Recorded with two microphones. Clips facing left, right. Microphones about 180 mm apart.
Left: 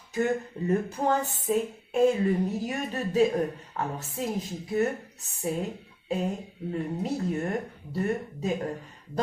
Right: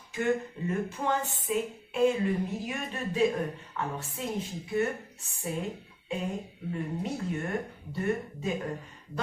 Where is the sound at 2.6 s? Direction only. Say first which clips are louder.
Left 4 dB; 40° left (ahead or behind).